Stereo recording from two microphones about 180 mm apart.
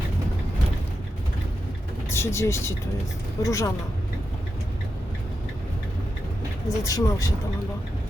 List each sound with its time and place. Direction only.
2.0 s speech: 15° left (ahead or behind)
6.7 s speech: 20° left (ahead or behind)